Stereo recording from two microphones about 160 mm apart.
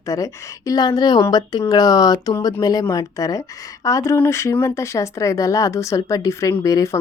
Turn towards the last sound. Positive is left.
turn(degrees=20)  # may be behind; listen again after turning